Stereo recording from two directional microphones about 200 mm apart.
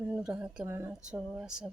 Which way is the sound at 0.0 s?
5° right (ahead or behind).